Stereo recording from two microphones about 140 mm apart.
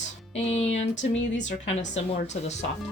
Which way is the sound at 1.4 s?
55° left (ahead or behind).